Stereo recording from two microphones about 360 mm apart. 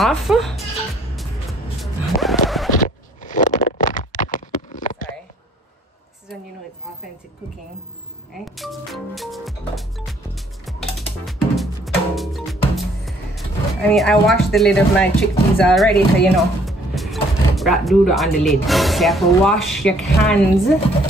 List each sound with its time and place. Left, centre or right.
0.0 s speech: centre
1.8 s music: centre
2.7 s a sound: left
8.5 s music: centre
15.5 s speech: centre